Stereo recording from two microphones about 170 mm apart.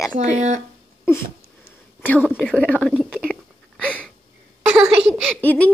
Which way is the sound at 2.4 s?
5° left (ahead or behind).